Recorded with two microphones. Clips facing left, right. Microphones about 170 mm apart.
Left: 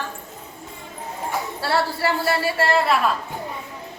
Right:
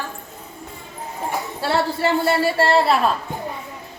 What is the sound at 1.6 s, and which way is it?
A woman's voice, 20° right (ahead or behind).